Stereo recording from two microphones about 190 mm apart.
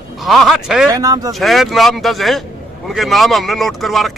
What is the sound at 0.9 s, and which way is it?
Speech, 20° right (ahead or behind).